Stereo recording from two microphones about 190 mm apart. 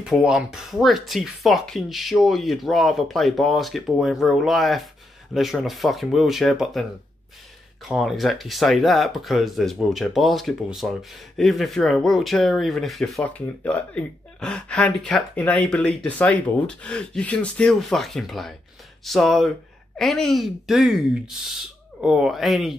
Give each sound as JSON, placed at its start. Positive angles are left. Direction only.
{"t": 0.0, "sound": "speech", "side_deg": -5}